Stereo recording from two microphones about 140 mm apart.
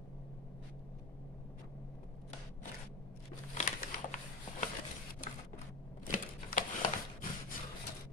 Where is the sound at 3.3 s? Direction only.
60° left (ahead or behind).